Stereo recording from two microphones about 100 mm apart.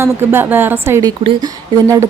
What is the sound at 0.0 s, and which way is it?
Speech, 25° right (ahead or behind).